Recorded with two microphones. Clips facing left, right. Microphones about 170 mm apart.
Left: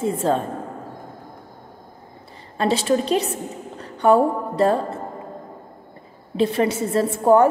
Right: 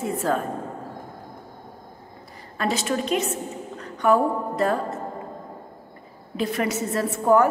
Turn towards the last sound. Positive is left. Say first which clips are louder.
# left 3 dB
turn(degrees=30)  # may be behind; listen again after turning